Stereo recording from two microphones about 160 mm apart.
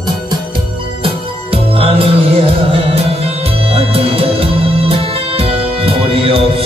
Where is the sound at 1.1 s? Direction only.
35° right (ahead or behind).